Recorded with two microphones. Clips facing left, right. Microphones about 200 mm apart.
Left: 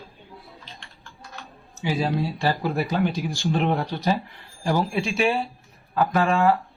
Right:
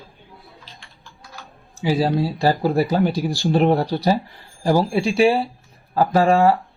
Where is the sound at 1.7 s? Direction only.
35° right (ahead or behind).